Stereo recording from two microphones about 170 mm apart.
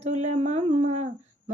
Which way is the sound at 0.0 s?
40° right (ahead or behind).